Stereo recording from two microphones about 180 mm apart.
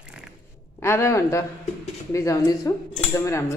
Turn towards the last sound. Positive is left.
turn(degrees=15)  # may be behind; listen again after turning